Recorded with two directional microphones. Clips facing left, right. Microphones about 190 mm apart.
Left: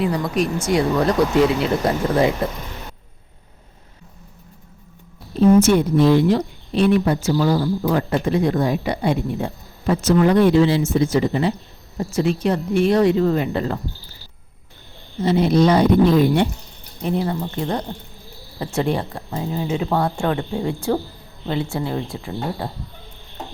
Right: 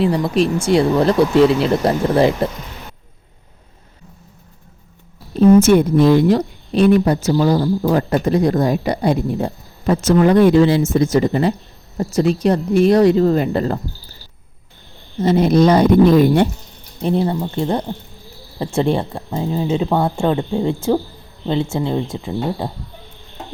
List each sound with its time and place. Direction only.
0.0 s speech: 30° right (ahead or behind)
2.4 s speech: 30° right (ahead or behind)
5.4 s a woman's voice: 50° right (ahead or behind)
15.2 s a woman's voice: 45° right (ahead or behind)
17.0 s speech: 30° right (ahead or behind)